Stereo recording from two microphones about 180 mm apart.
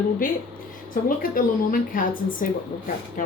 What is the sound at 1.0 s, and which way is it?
Speech, 50° left (ahead or behind).